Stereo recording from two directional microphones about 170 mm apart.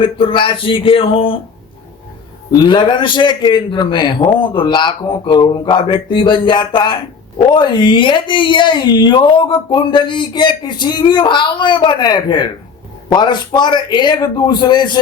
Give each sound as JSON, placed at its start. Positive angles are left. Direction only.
{"t": 0.0, "sound": "speech", "side_deg": 30}
{"t": 2.5, "sound": "speech", "side_deg": 25}